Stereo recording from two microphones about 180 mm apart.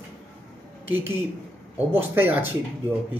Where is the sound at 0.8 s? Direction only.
10° right (ahead or behind).